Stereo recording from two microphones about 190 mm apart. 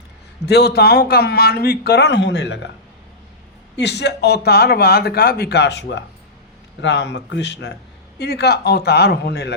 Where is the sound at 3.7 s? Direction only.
65° left (ahead or behind).